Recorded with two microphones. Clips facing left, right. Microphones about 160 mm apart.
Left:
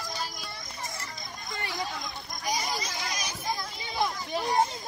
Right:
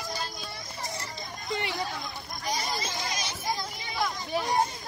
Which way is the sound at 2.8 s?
25° right (ahead or behind).